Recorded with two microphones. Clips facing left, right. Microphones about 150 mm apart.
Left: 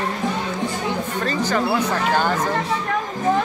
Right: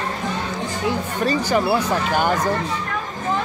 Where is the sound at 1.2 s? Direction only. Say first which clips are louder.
Right 3 dB; 10° right (ahead or behind).